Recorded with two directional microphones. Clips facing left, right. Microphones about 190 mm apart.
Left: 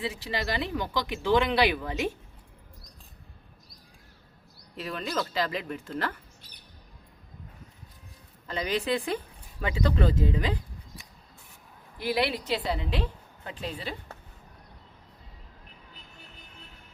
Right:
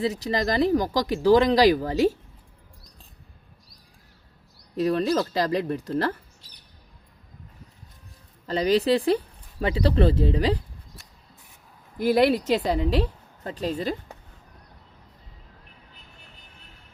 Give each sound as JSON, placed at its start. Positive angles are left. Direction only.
{"t": 0.0, "sound": "speech", "side_deg": -40}
{"t": 4.8, "sound": "speech", "side_deg": -35}
{"t": 8.4, "sound": "speech", "side_deg": -35}
{"t": 11.9, "sound": "a woman's voice", "side_deg": -45}